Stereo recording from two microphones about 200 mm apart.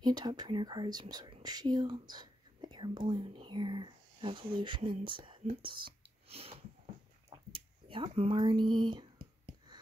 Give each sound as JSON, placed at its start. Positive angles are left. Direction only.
{"t": 0.0, "sound": "speech", "side_deg": -20}